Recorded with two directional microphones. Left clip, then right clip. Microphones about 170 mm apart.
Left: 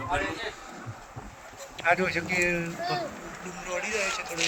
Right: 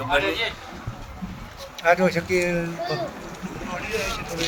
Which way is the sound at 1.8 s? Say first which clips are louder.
Right 6 dB; 90° right.